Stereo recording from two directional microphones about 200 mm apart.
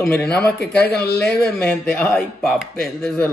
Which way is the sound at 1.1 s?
5° left (ahead or behind).